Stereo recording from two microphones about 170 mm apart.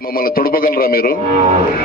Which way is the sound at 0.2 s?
60° left (ahead or behind).